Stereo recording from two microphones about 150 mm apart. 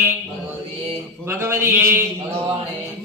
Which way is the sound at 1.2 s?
15° right (ahead or behind).